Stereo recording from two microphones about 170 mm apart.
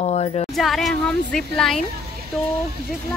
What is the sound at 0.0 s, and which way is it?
Speech, 35° left (ahead or behind).